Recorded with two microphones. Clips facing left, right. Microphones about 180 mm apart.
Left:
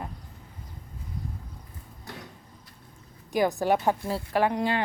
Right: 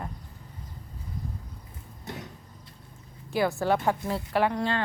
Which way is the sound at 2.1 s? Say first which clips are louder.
Right 4 dB; 20° right (ahead or behind).